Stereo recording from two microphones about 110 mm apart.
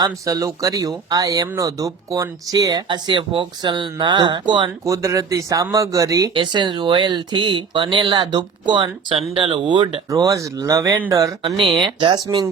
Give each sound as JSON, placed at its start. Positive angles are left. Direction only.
{"t": 0.0, "sound": "speech", "side_deg": -30}
{"t": 4.9, "sound": "speech", "side_deg": -30}
{"t": 6.3, "sound": "speech", "side_deg": -45}
{"t": 10.1, "sound": "speech", "side_deg": -30}
{"t": 11.8, "sound": "speech", "side_deg": -50}